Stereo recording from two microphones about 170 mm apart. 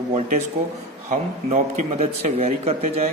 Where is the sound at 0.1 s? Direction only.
40° right (ahead or behind).